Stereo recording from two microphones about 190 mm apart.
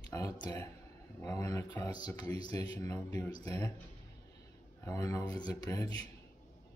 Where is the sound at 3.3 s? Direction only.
30° right (ahead or behind).